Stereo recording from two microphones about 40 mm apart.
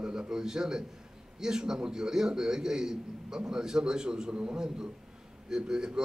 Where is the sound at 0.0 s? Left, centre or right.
Right.